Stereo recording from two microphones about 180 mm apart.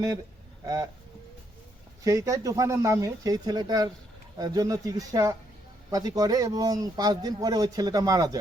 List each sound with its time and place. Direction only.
0.6 s speech: 20° right (ahead or behind)
2.0 s speech: 15° right (ahead or behind)